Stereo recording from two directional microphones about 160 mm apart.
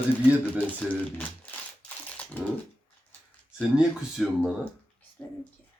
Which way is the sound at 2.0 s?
10° left (ahead or behind).